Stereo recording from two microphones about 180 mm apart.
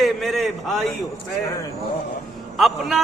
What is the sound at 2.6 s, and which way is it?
Speech, centre (ahead or behind).